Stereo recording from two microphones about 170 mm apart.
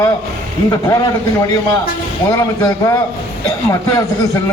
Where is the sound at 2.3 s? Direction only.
20° left (ahead or behind).